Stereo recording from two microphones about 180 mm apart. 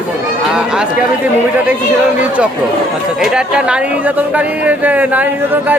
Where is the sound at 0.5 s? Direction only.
5° right (ahead or behind).